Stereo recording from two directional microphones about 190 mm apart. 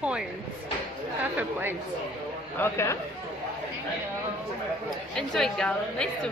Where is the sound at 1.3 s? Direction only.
10° right (ahead or behind).